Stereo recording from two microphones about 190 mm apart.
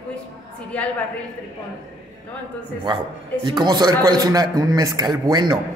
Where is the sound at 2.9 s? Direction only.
25° right (ahead or behind).